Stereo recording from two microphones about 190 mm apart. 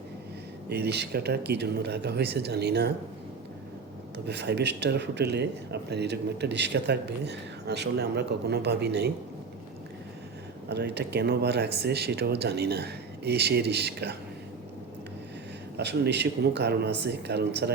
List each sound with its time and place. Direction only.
0.7 s speech: 60° right (ahead or behind)
4.3 s speech: 60° right (ahead or behind)
10.7 s speech: 60° right (ahead or behind)
15.8 s speech: 65° right (ahead or behind)